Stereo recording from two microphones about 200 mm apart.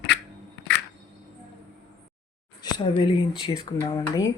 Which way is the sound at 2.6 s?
25° left (ahead or behind).